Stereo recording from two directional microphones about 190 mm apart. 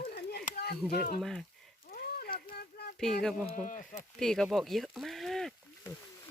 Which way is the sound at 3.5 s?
40° left (ahead or behind).